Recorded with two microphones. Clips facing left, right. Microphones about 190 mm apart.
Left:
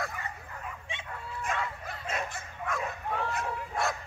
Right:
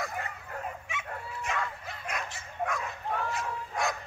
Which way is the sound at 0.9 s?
30° left (ahead or behind).